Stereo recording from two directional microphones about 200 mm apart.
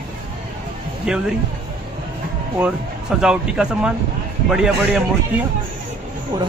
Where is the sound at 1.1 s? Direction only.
5° right (ahead or behind).